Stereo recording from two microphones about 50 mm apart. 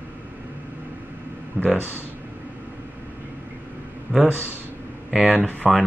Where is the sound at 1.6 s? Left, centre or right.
Left.